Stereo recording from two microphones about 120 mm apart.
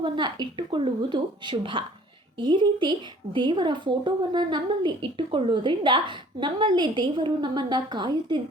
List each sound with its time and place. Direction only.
0.0 s a woman's voice: 40° right (ahead or behind)